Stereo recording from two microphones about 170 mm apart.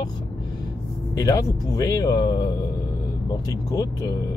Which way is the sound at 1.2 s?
20° left (ahead or behind).